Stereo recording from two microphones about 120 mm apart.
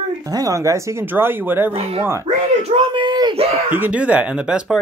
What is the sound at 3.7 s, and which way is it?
Speech, 15° right (ahead or behind).